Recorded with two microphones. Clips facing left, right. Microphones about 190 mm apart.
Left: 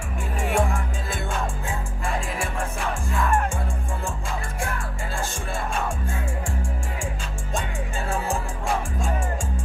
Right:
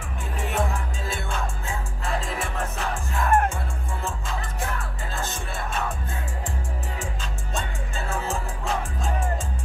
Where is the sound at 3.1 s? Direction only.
40° right (ahead or behind).